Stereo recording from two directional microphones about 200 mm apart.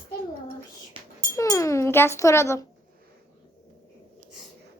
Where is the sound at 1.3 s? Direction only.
15° left (ahead or behind).